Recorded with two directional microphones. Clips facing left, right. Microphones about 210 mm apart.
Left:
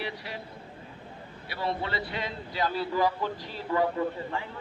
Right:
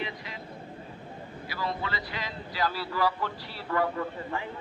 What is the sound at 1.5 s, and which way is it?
A man's voice, 25° left (ahead or behind).